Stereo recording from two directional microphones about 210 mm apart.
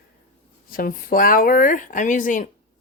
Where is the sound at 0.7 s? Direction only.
45° left (ahead or behind).